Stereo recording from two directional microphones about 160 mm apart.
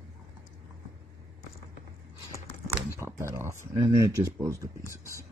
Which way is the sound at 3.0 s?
15° right (ahead or behind).